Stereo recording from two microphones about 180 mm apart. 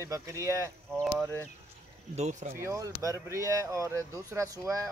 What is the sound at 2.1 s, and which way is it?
Speech, 40° right (ahead or behind).